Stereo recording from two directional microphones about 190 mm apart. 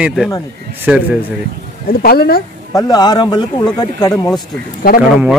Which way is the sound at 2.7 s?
20° left (ahead or behind).